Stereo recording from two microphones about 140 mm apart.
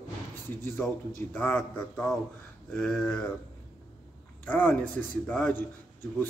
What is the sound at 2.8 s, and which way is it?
Speech, 5° left (ahead or behind).